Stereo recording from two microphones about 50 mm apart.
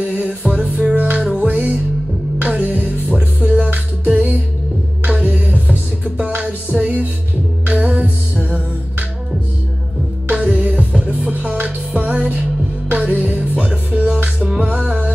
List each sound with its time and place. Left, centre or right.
0.0 s music: right
0.9 s music: right
1.2 s music: centre
1.5 s music: right
10.3 s music: right